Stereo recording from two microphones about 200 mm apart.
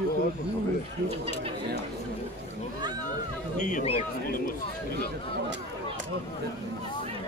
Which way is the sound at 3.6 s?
40° left (ahead or behind).